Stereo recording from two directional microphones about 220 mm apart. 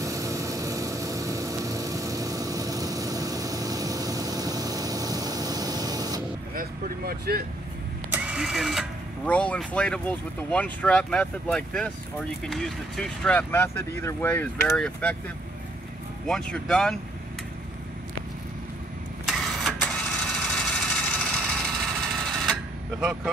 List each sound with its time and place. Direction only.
0.0 s vehicle: 15° right (ahead or behind)
6.5 s speech: 40° right (ahead or behind)
8.1 s speech: 5° right (ahead or behind)
16.3 s speech: 5° left (ahead or behind)
19.2 s vehicle: centre (ahead or behind)